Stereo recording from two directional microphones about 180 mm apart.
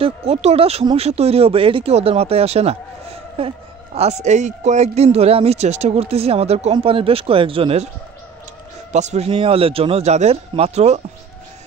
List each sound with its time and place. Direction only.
0.0 s speech: 35° right (ahead or behind)
8.9 s speech: 40° right (ahead or behind)